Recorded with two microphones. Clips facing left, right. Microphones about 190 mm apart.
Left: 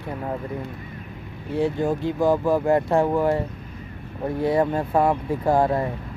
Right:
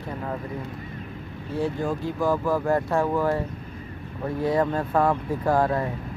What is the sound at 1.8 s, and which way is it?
Speech, 20° left (ahead or behind).